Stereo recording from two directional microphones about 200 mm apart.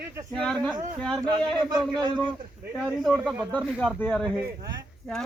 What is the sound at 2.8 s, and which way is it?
Speech, centre (ahead or behind).